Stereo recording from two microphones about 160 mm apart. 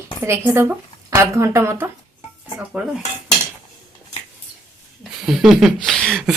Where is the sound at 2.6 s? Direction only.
5° right (ahead or behind).